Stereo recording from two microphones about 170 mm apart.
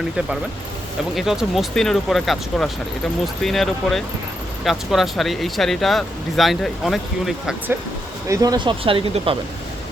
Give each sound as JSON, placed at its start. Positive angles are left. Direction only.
{"t": 1.1, "sound": "speech", "side_deg": 0}
{"t": 8.3, "sound": "speech", "side_deg": -20}